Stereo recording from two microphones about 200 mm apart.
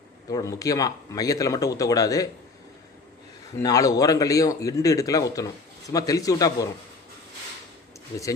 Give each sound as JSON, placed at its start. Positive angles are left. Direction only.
{"t": 0.3, "sound": "speech", "side_deg": 15}
{"t": 3.6, "sound": "speech", "side_deg": 15}